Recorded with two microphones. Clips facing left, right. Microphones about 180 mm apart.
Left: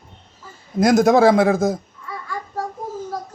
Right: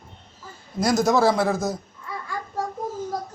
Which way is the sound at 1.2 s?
75° left (ahead or behind).